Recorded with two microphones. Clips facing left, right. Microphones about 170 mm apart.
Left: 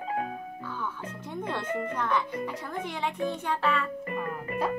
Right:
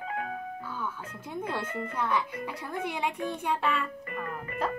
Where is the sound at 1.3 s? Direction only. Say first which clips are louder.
Left 1 dB; 10° right (ahead or behind).